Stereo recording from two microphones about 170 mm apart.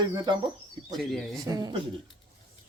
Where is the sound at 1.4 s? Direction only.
20° right (ahead or behind).